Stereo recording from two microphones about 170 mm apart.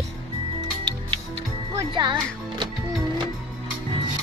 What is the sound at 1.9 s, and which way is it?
Speech, 30° right (ahead or behind).